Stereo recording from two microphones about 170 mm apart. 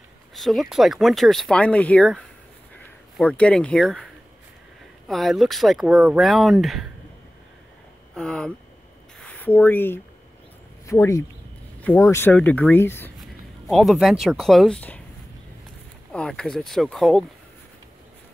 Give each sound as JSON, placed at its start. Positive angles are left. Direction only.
{"t": 0.3, "sound": "speech", "side_deg": 0}
{"t": 8.1, "sound": "a sound", "side_deg": 5}
{"t": 9.2, "sound": "speech", "side_deg": 10}
{"t": 13.2, "sound": "speech", "side_deg": 0}
{"t": 16.1, "sound": "speech", "side_deg": 5}